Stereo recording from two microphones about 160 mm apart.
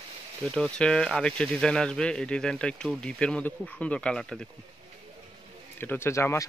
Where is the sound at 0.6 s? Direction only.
5° left (ahead or behind).